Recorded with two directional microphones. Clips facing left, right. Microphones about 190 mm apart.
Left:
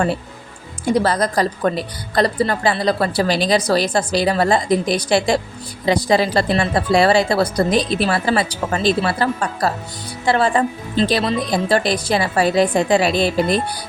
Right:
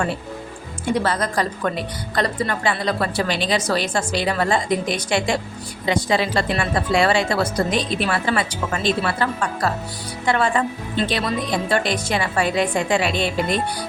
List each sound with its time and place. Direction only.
0.9 s a woman's voice: 35° left (ahead or behind)